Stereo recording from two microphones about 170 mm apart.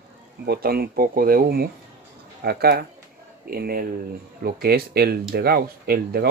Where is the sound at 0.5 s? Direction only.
65° right (ahead or behind).